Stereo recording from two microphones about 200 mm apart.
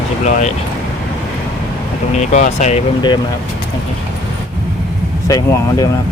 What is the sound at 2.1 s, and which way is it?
Speech, 35° left (ahead or behind).